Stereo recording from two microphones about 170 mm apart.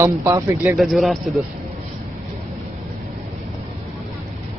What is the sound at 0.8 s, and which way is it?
Speech, centre (ahead or behind).